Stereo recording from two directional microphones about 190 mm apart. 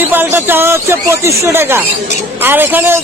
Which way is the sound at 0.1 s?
10° right (ahead or behind).